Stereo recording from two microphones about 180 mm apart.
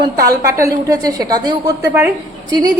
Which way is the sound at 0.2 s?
15° right (ahead or behind).